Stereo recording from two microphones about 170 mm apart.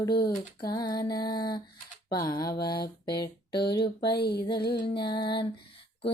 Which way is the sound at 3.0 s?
25° left (ahead or behind).